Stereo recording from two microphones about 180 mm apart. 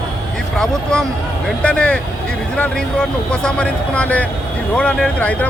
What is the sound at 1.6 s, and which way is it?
A man's voice, 5° left (ahead or behind).